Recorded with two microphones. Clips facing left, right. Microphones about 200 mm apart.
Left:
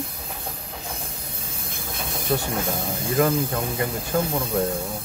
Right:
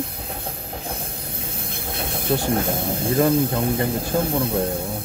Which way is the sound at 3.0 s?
30° right (ahead or behind).